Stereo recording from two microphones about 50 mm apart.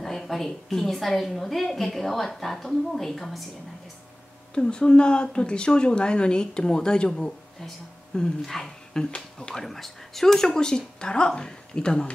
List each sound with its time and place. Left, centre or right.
0.0 s a woman's voice: centre
4.6 s speech: centre
8.4 s speech: centre
9.7 s speech: centre